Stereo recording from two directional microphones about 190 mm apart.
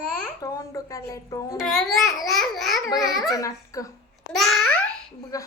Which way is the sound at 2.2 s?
Centre (ahead or behind).